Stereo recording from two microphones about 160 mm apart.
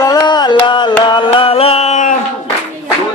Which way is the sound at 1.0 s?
30° left (ahead or behind).